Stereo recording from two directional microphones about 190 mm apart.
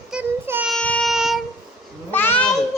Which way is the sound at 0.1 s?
10° right (ahead or behind).